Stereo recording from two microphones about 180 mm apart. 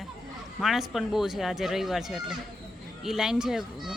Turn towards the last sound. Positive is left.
turn(degrees=-5)  # may be behind; listen again after turning